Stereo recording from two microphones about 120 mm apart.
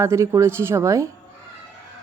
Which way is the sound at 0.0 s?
25° right (ahead or behind).